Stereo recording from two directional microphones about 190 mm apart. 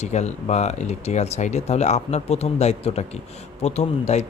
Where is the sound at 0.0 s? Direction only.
35° left (ahead or behind).